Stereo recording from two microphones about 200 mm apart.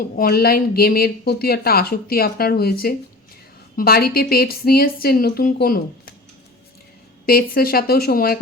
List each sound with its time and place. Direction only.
0.0 s a woman's voice: 50° left (ahead or behind)
7.3 s a woman's voice: 50° left (ahead or behind)